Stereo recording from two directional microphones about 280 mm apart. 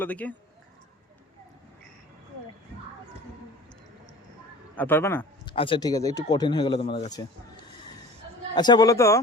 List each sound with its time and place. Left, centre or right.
0.0 s speech: centre
4.8 s a man's voice: centre
8.5 s speech: centre